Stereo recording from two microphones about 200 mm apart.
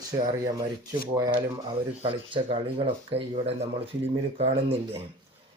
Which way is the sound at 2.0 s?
25° right (ahead or behind).